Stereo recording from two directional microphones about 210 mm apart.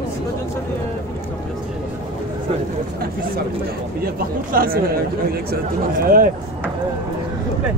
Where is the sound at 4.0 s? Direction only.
45° right (ahead or behind).